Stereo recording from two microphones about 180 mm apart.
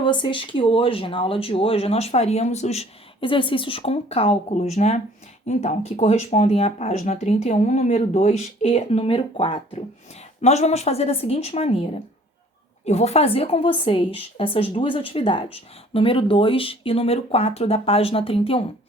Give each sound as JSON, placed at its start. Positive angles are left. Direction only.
{"t": 0.0, "sound": "a woman's voice", "side_deg": 25}